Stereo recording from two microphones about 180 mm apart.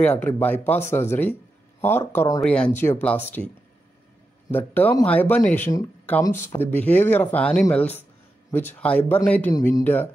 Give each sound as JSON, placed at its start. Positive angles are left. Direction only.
{"t": 0.0, "sound": "speech", "side_deg": 10}
{"t": 4.5, "sound": "speech", "side_deg": 10}